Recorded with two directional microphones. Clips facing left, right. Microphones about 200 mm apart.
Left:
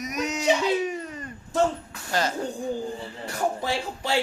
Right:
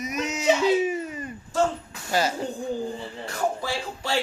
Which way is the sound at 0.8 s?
5° right (ahead or behind).